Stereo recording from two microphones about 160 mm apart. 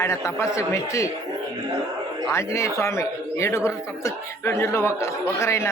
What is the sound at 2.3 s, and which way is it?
A man's voice, 20° left (ahead or behind).